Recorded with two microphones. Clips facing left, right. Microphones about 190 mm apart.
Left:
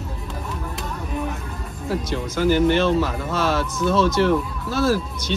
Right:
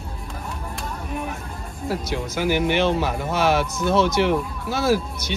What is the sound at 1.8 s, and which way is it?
Speech, 10° right (ahead or behind).